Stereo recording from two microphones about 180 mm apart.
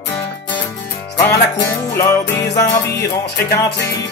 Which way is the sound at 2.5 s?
65° left (ahead or behind).